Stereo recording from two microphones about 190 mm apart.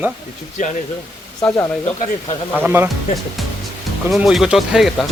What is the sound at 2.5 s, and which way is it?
Speech, 10° right (ahead or behind).